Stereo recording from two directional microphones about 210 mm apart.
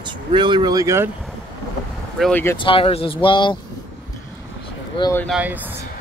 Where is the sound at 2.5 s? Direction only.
25° left (ahead or behind).